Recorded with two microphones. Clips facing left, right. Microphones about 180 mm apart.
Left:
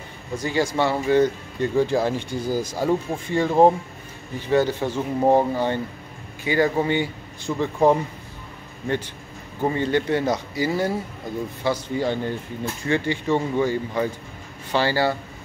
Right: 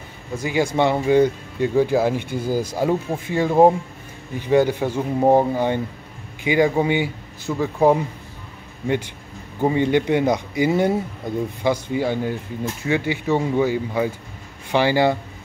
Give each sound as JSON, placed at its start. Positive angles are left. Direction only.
{"t": 0.3, "sound": "speech", "side_deg": -10}
{"t": 9.6, "sound": "speech", "side_deg": -15}